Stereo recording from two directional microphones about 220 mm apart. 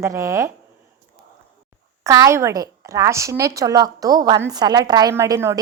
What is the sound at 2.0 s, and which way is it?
A woman's voice, 15° right (ahead or behind).